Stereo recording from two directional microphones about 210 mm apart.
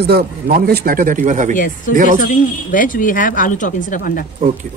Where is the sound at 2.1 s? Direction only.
40° left (ahead or behind).